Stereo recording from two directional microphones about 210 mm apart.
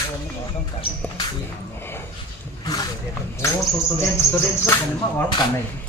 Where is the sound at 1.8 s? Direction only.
10° left (ahead or behind).